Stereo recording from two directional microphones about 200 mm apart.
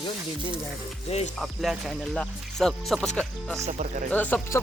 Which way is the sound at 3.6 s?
35° right (ahead or behind).